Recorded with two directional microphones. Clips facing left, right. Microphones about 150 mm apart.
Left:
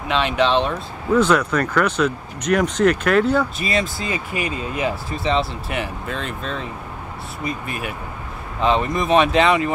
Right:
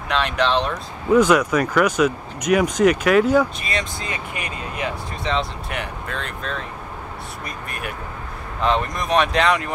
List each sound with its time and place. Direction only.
0.1 s speech: 5° left (ahead or behind)
1.1 s speech: 10° right (ahead or behind)
3.5 s speech: 5° left (ahead or behind)